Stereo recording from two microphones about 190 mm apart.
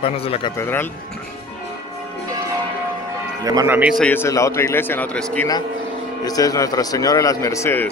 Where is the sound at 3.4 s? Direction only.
20° right (ahead or behind).